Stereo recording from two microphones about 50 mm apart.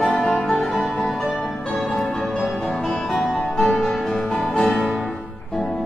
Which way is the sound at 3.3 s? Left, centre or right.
Centre.